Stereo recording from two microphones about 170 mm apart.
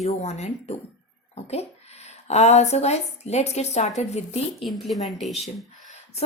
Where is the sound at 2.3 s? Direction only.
40° left (ahead or behind).